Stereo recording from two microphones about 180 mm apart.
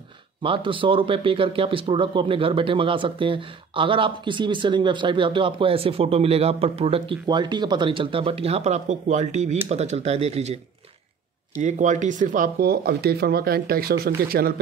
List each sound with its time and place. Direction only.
0.4 s speech: 30° right (ahead or behind)
11.6 s speech: 40° right (ahead or behind); by 14.5 s 60° right (ahead or behind)